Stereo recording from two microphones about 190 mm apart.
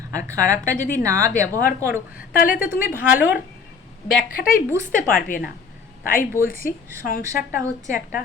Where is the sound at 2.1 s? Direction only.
50° left (ahead or behind).